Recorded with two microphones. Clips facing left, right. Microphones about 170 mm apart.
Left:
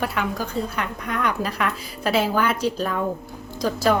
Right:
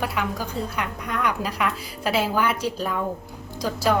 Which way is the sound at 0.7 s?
10° right (ahead or behind).